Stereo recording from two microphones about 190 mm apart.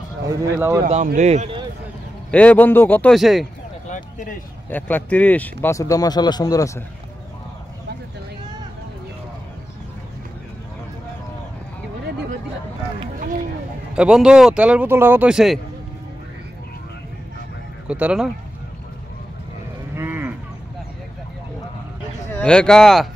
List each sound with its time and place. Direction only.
0.6 s speech: 10° right (ahead or behind)
1.0 s a man's voice: 40° right (ahead or behind)
2.3 s speech: 10° left (ahead or behind)
3.8 s a sound: 40° left (ahead or behind)
4.6 s speech: 10° left (ahead or behind)
13.9 s speech: 5° right (ahead or behind)
17.8 s speech: 5° right (ahead or behind)
20.0 s livestock: 10° right (ahead or behind)
22.3 s speech: 5° left (ahead or behind)